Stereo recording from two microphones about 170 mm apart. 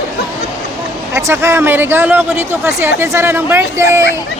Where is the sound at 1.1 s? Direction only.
15° right (ahead or behind).